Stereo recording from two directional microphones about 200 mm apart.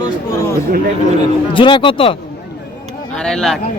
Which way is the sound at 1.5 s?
25° left (ahead or behind).